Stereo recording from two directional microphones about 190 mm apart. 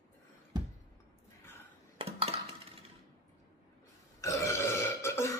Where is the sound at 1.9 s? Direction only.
30° right (ahead or behind).